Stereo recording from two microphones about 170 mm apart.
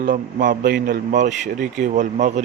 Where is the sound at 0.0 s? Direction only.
50° right (ahead or behind).